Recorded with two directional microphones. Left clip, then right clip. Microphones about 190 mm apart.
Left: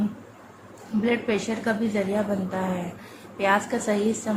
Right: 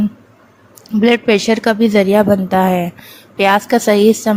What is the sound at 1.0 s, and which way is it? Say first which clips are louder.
A woman's voice: right 13 dB; 45° right (ahead or behind).